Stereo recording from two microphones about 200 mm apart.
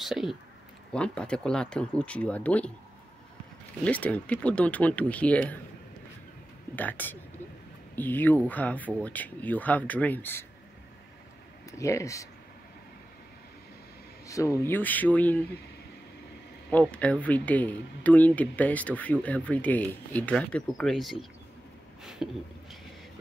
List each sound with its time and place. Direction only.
0.0 s speech: centre (ahead or behind)
3.8 s speech: 5° left (ahead or behind)
6.7 s speech: 10° left (ahead or behind)
11.8 s speech: 15° left (ahead or behind)
14.2 s speech: 15° left (ahead or behind)
16.7 s speech: 5° left (ahead or behind)
22.0 s a sound: centre (ahead or behind)